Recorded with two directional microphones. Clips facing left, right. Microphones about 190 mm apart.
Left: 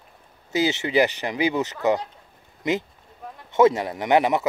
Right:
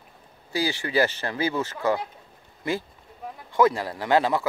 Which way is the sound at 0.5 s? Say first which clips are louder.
Left 4 dB; 20° left (ahead or behind).